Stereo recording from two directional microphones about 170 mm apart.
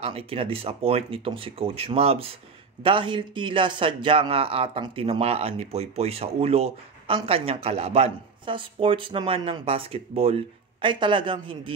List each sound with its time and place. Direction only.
0.0 s speech: 35° right (ahead or behind)